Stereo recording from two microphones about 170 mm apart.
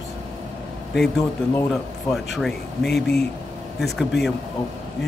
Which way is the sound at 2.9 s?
75° left (ahead or behind).